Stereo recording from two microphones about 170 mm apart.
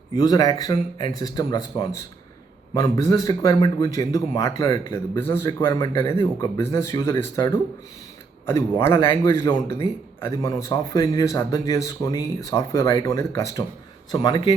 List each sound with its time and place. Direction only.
0.1 s a man's voice: 25° left (ahead or behind)